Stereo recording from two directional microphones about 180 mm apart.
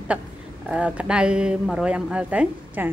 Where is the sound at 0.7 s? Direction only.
5° right (ahead or behind).